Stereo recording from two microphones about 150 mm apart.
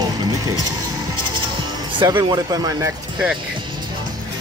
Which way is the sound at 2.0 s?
30° right (ahead or behind).